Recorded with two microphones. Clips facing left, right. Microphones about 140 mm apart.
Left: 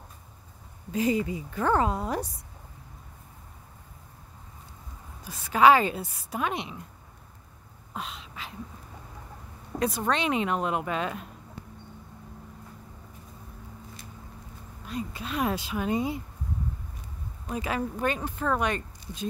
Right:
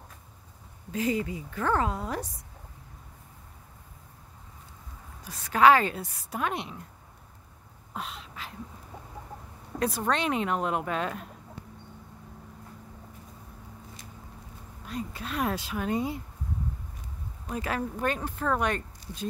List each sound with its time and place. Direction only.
0.9 s speech: 15° left (ahead or behind)
5.2 s a woman's voice: 5° left (ahead or behind)
7.9 s a sound: centre (ahead or behind)
9.8 s a woman's voice: 5° right (ahead or behind)
14.9 s speech: 5° left (ahead or behind)
17.5 s a woman's voice: 5° left (ahead or behind)